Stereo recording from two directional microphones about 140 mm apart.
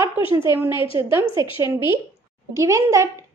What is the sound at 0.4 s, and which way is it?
A woman's voice, 20° right (ahead or behind).